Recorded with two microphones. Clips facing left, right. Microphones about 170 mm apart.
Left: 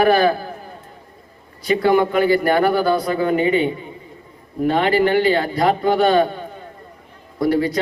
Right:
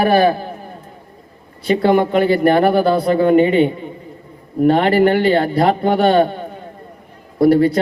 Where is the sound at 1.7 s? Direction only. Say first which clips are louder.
Right 2 dB; 25° right (ahead or behind).